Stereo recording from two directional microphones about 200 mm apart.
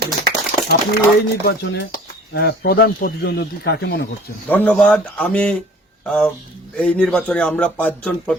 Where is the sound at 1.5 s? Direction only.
60° left (ahead or behind).